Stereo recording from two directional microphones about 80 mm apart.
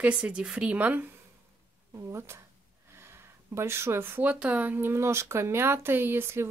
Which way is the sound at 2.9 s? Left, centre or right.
Right.